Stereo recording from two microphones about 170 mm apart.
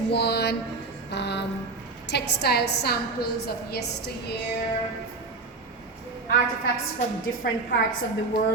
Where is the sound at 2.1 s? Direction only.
80° left.